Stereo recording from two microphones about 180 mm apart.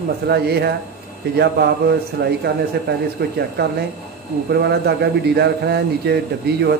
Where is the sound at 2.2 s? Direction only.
75° right (ahead or behind).